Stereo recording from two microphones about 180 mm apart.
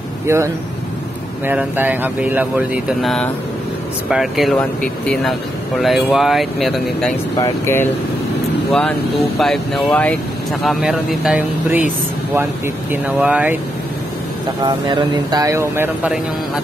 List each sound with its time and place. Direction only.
0.3 s speech: 15° right (ahead or behind); by 7.2 s centre (ahead or behind)
7.3 s speech: 15° left (ahead or behind)
9.4 s speech: centre (ahead or behind)
12.9 s speech: 10° right (ahead or behind)
14.6 s speech: 25° right (ahead or behind)